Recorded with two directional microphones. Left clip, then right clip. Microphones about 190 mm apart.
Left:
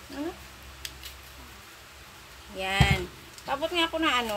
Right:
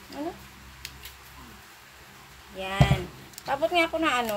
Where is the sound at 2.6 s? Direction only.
40° left (ahead or behind).